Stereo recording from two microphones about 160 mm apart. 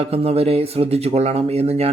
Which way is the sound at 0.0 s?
40° right (ahead or behind).